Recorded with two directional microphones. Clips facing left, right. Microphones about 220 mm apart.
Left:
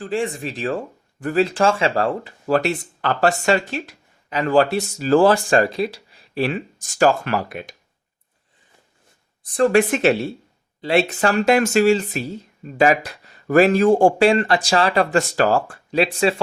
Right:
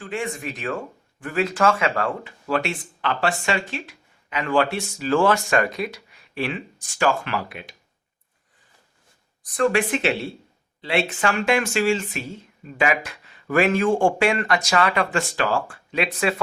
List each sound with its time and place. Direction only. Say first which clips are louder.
0.0 s speech: left 5 dB; 35° left (ahead or behind)
9.4 s speech: left 5 dB; 30° left (ahead or behind)
9.7 s speech: left 6 dB; 45° left (ahead or behind)